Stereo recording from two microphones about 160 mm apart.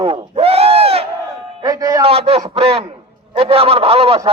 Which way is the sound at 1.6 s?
25° right (ahead or behind).